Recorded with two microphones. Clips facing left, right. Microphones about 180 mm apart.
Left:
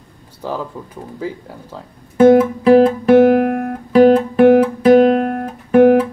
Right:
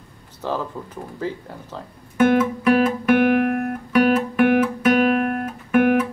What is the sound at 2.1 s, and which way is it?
Guitar, 30° left (ahead or behind).